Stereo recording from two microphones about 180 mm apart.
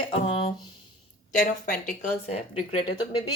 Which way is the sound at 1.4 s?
45° left (ahead or behind).